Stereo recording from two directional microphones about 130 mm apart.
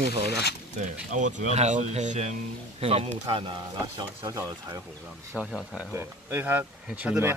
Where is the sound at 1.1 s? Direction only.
70° right (ahead or behind).